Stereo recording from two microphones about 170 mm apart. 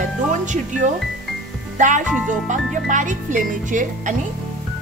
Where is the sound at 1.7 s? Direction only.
45° right (ahead or behind).